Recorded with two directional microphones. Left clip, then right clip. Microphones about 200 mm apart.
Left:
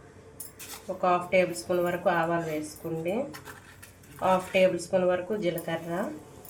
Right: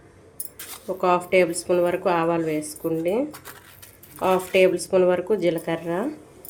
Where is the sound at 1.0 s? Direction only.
60° right (ahead or behind).